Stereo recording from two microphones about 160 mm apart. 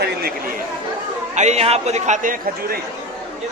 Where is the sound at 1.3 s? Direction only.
45° right (ahead or behind).